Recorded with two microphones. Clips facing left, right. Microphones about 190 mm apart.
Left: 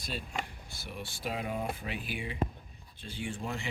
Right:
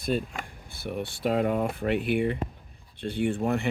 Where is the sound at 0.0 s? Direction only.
50° right (ahead or behind).